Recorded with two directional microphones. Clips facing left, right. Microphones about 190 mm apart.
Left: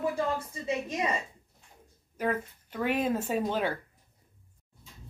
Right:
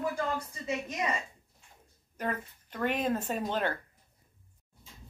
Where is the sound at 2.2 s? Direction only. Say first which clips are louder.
Left 4 dB; 10° left (ahead or behind).